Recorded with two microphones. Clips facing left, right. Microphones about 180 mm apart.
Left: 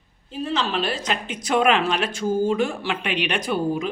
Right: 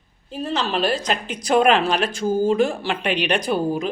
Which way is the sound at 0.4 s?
40° right (ahead or behind).